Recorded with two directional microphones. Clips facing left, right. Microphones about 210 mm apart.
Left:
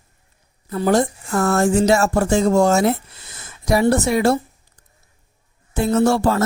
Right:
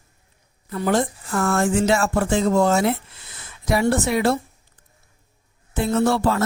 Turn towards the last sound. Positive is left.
turn(degrees=45)  # may be behind; listen again after turning